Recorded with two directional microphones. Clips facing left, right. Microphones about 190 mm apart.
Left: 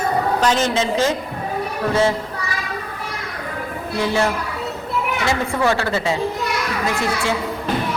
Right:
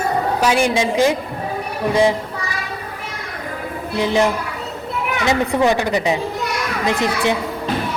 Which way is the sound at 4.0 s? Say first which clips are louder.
Right 3 dB; 15° right (ahead or behind).